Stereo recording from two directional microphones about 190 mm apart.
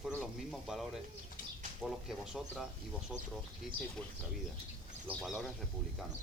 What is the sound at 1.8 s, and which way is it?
Speech, centre (ahead or behind).